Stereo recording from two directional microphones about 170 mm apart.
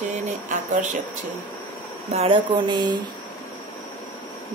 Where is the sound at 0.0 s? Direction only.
50° right (ahead or behind).